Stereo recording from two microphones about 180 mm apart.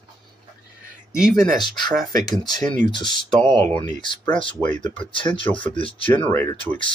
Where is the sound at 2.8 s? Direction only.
25° left (ahead or behind).